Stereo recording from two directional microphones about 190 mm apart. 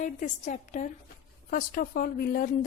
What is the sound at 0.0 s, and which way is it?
A woman's voice, 45° left (ahead or behind).